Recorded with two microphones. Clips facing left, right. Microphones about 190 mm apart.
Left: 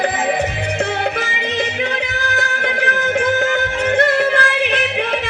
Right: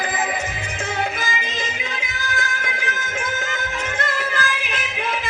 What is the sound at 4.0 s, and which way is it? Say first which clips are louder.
Music: left 10 dB; 65° left (ahead or behind).